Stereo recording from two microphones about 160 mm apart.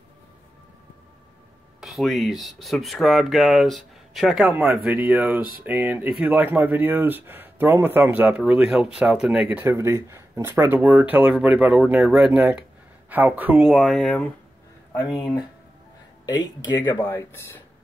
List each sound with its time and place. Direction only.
1.8 s speech: centre (ahead or behind)
16.3 s speech: 25° left (ahead or behind)
17.0 s speech: 15° left (ahead or behind)